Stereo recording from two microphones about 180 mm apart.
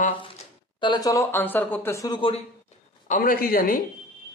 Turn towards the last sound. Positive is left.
turn(degrees=55)  # may be behind; listen again after turning